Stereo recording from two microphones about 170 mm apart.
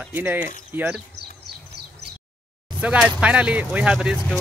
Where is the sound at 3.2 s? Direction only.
5° right (ahead or behind).